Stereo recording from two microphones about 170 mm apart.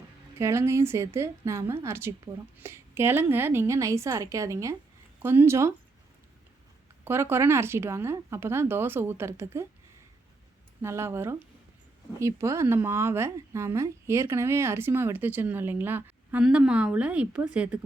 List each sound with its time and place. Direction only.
0.3 s speech: 15° right (ahead or behind)
7.0 s speech: 15° right (ahead or behind)
10.8 s speech: 15° right (ahead or behind)